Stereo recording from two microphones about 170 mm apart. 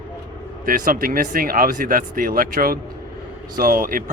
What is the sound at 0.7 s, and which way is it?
Speech, 55° right (ahead or behind).